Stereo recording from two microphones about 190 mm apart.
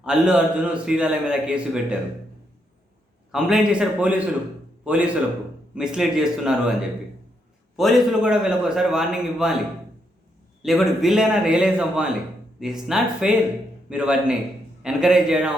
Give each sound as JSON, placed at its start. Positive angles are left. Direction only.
{"t": 0.0, "sound": "a man's voice", "side_deg": -5}
{"t": 3.3, "sound": "a man's voice", "side_deg": -5}
{"t": 7.8, "sound": "a man's voice", "side_deg": 0}
{"t": 10.6, "sound": "a man's voice", "side_deg": 0}